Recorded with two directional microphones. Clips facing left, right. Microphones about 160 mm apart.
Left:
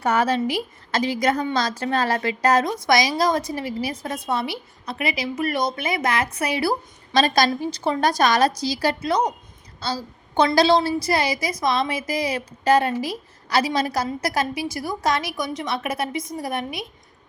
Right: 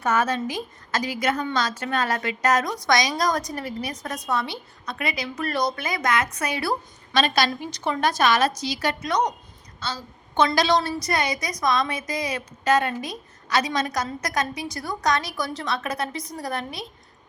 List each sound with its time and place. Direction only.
0.0 s a woman's voice: 35° left (ahead or behind)